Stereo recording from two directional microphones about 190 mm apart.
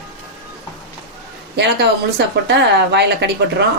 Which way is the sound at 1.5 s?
65° right (ahead or behind).